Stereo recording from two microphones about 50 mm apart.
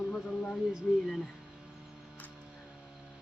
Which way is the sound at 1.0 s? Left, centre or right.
Centre.